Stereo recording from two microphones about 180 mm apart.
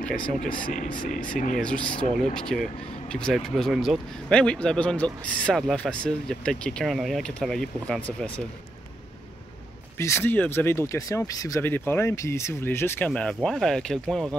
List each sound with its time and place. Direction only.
0.6 s speech: 50° left (ahead or behind)
1.6 s speech: 5° left (ahead or behind)
9.9 s speech: 15° left (ahead or behind)